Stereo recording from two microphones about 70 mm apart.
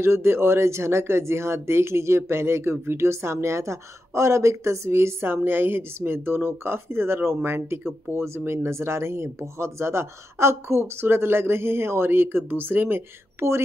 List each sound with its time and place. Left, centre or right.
0.0 s speech: right